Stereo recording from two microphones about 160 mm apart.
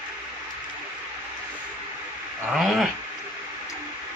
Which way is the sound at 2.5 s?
Centre (ahead or behind).